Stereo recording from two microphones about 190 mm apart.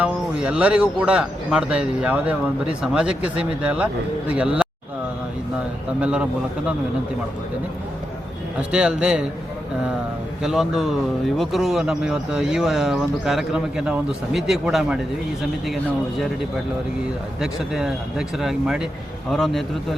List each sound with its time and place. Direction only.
0.0 s a man's voice: 5° right (ahead or behind)
6.0 s speech: 5° right (ahead or behind)
8.7 s speech: 5° right (ahead or behind)
10.4 s speech: centre (ahead or behind)
17.4 s speech: centre (ahead or behind)